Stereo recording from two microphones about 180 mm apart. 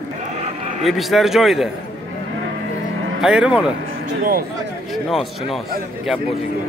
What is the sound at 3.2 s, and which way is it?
Speech, 5° right (ahead or behind).